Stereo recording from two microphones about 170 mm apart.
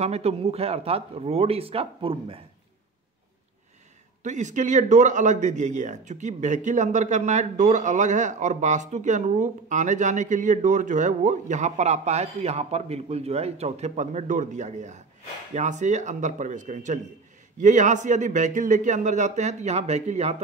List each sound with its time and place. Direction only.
0.0 s speech: 35° right (ahead or behind)
4.2 s speech: 45° right (ahead or behind)